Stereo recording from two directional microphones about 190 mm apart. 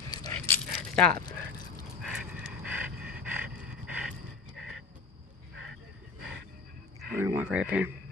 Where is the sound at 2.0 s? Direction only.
5° right (ahead or behind).